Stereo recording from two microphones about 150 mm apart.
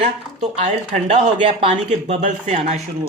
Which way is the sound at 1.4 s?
35° right (ahead or behind).